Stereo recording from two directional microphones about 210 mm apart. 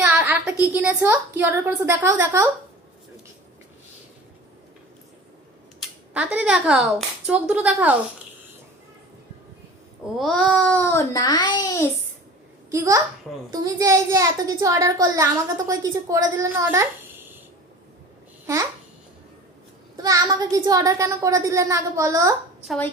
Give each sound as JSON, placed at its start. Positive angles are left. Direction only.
{"t": 0.0, "sound": "a sound", "side_deg": -10}
{"t": 0.6, "sound": "a child's voice", "side_deg": -5}
{"t": 6.1, "sound": "a woman's voice", "side_deg": -5}
{"t": 10.2, "sound": "a child's voice", "side_deg": 0}
{"t": 12.7, "sound": "a child's voice", "side_deg": -15}
{"t": 20.0, "sound": "a child's voice", "side_deg": -20}